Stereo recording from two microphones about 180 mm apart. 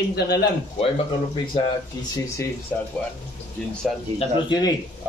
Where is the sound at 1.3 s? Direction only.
25° left (ahead or behind).